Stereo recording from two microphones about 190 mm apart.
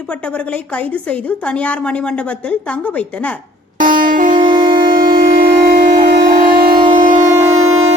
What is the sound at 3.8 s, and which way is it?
Music, 45° right (ahead or behind).